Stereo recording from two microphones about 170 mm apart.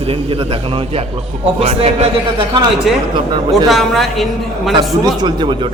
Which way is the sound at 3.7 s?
Centre (ahead or behind).